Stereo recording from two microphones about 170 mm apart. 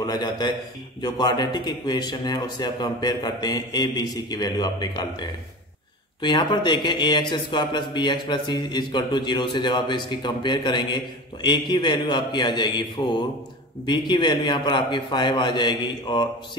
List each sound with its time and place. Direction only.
0.0 s speech: 25° left (ahead or behind)